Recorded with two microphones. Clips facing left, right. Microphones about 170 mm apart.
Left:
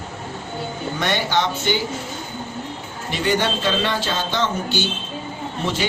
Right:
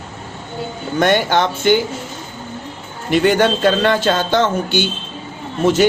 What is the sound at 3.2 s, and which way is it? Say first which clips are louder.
Speech: right 6 dB; 50° right (ahead or behind).